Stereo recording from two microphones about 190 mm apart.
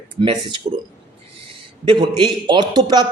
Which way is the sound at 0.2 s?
25° right (ahead or behind).